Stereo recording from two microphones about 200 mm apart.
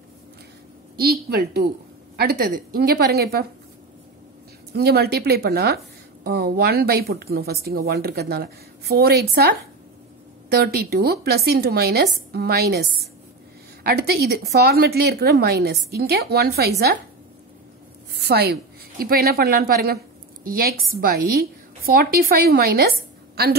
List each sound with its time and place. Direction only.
0.9 s a woman's voice: 50° right (ahead or behind)
4.7 s speech: 55° right (ahead or behind)
10.5 s speech: 50° right (ahead or behind)
18.1 s a woman's voice: 55° right (ahead or behind)